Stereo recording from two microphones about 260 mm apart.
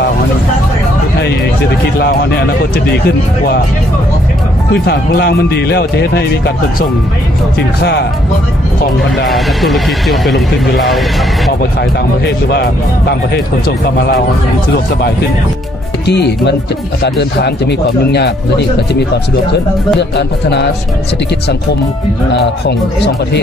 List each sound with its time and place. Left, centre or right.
4.8 s speech: left
9.2 s speech: centre
12.3 s speech: left
13.7 s speech: left
16.1 s speech: left